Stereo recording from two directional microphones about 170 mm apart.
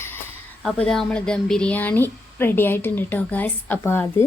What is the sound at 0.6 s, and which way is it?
Speech, centre (ahead or behind).